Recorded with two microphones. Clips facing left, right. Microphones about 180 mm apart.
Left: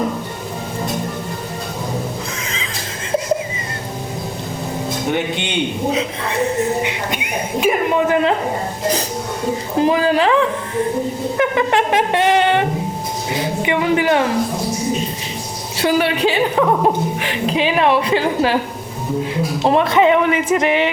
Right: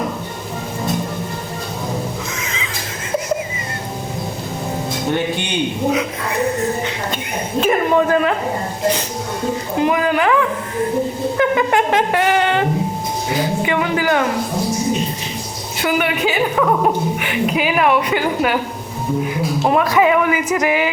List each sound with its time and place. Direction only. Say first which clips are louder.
5.1 s speech: right 2 dB; 20° left (ahead or behind)
7.6 s a sound: right 1 dB; 15° left (ahead or behind)
9.7 s speech: left 2 dB; 30° left (ahead or behind)
15.8 s a woman's voice: left 2 dB; 30° left (ahead or behind)